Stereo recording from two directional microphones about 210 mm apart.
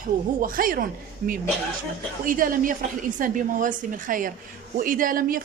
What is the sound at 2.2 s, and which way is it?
A woman's voice, 40° right (ahead or behind).